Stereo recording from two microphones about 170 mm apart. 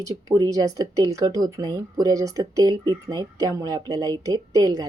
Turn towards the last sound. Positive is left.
turn(degrees=-20)  # may be behind; listen again after turning